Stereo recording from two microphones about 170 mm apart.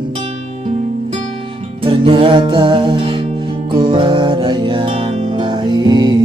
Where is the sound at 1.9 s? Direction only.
30° right (ahead or behind).